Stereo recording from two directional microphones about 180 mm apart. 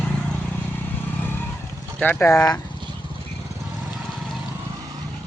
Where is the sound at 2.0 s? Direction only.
10° left (ahead or behind).